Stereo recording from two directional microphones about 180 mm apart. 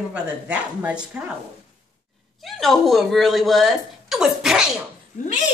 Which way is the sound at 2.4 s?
Centre (ahead or behind).